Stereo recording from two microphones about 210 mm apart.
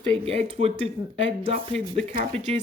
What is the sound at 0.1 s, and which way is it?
Speech, 30° right (ahead or behind).